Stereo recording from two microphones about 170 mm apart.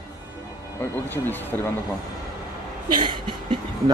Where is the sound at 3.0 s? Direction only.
30° right (ahead or behind).